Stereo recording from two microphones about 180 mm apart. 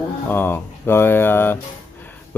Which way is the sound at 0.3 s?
10° left (ahead or behind).